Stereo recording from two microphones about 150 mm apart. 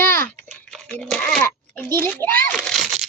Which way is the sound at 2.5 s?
5° left (ahead or behind).